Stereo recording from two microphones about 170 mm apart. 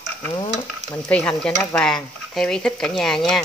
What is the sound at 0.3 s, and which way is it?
Stir, 25° left (ahead or behind).